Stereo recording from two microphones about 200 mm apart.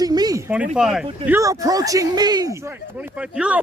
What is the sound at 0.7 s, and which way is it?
Speech, 5° right (ahead or behind).